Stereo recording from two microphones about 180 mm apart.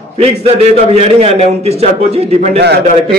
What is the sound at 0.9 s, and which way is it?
A man's voice, 35° right (ahead or behind).